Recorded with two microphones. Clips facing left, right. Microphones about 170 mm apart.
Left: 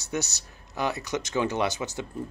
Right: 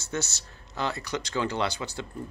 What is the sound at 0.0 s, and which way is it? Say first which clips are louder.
Speech: left 1 dB; 15° left (ahead or behind).